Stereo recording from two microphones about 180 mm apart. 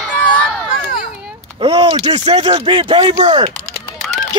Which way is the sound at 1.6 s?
30° right (ahead or behind).